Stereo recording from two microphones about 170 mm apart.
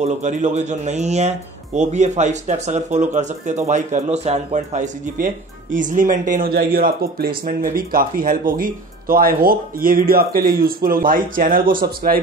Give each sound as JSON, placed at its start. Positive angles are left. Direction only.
{"t": 0.0, "sound": "speech", "side_deg": -45}
{"t": 5.1, "sound": "speech", "side_deg": -50}